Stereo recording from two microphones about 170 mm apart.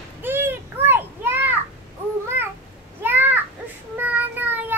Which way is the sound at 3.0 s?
10° right (ahead or behind).